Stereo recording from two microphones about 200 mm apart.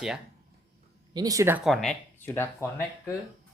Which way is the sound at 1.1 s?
15° right (ahead or behind).